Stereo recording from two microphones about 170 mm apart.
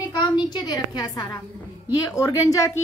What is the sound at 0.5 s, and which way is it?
A woman's voice, 25° left (ahead or behind).